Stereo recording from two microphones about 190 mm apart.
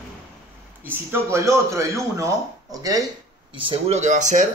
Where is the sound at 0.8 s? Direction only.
15° right (ahead or behind).